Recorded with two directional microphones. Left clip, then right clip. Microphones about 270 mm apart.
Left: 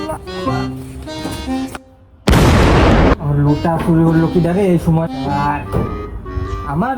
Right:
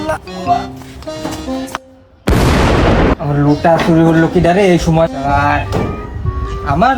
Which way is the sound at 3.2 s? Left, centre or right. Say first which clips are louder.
Right 6 dB; right.